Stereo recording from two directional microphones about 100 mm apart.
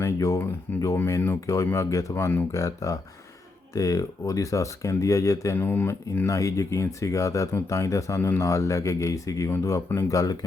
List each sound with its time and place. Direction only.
0.0 s speech: 30° left (ahead or behind)
5.5 s speech: 20° left (ahead or behind)